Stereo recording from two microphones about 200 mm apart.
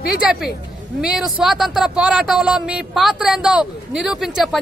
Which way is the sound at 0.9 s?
5° right (ahead or behind).